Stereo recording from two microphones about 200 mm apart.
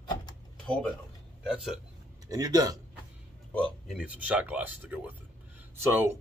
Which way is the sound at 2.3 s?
20° right (ahead or behind).